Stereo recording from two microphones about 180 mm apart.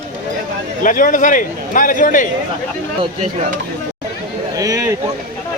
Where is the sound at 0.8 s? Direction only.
50° left (ahead or behind).